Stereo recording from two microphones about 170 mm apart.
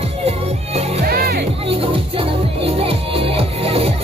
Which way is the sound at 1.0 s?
65° right (ahead or behind).